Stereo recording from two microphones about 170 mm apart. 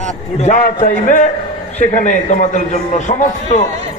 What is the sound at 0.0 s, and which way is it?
A man's voice, 45° left (ahead or behind).